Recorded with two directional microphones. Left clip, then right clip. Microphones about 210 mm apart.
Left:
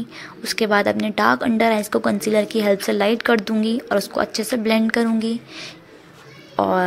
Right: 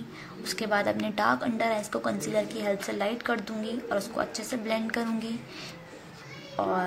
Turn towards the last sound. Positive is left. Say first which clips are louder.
# left 9 dB
turn(degrees=40)  # may be behind; listen again after turning